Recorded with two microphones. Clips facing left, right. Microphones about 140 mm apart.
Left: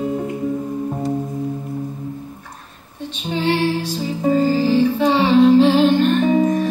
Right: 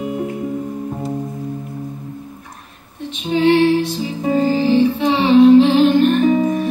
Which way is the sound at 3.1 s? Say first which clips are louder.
Right 6 dB; 35° left (ahead or behind).